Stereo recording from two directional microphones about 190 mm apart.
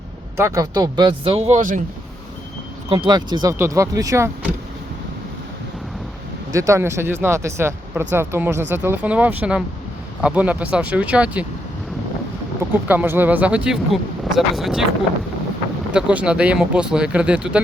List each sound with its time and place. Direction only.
0.3 s speech: 15° right (ahead or behind); by 1.8 s 40° right (ahead or behind)
2.9 s speech: 25° right (ahead or behind)
6.5 s speech: 15° right (ahead or behind)
12.9 s speech: 10° right (ahead or behind)
15.9 s speech: 5° right (ahead or behind)